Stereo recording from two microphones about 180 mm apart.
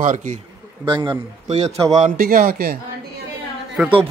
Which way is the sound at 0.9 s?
25° right (ahead or behind).